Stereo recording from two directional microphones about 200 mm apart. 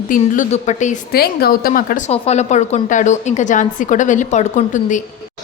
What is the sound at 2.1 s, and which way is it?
A woman's voice, 35° left (ahead or behind).